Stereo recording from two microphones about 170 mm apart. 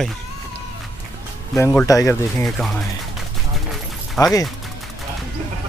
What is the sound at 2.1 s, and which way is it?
Speech, 5° left (ahead or behind).